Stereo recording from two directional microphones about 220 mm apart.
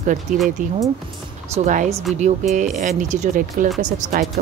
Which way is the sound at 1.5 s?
35° right (ahead or behind).